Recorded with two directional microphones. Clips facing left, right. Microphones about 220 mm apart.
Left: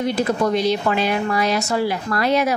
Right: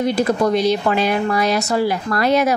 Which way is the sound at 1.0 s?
45° right (ahead or behind).